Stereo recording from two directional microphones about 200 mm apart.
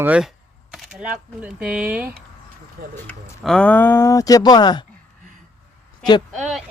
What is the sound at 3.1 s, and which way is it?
Speech, 5° left (ahead or behind).